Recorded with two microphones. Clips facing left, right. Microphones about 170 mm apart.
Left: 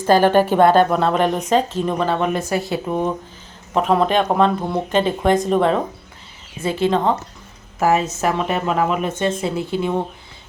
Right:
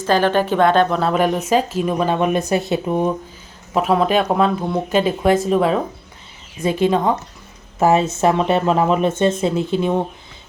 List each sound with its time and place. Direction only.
0.2 s speech: 10° left (ahead or behind)
6.6 s speech: 15° right (ahead or behind)
7.8 s speech: 25° right (ahead or behind)